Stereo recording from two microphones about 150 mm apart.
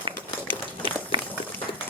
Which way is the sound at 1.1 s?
35° right (ahead or behind).